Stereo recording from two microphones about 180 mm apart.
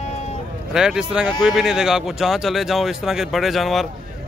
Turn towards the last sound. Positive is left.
turn(degrees=0)  # may be behind; listen again after turning